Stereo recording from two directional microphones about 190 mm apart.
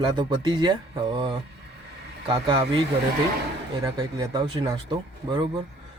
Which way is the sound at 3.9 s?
20° right (ahead or behind).